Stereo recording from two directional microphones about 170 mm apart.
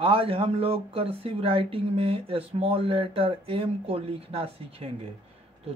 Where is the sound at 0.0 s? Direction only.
35° right (ahead or behind).